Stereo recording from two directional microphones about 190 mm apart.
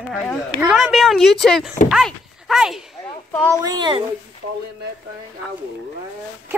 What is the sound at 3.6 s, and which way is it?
Speech, 20° right (ahead or behind).